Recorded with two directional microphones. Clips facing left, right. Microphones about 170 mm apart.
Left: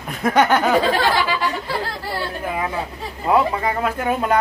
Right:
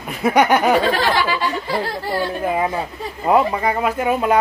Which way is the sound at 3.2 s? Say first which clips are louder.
Right 2 dB; 15° right (ahead or behind).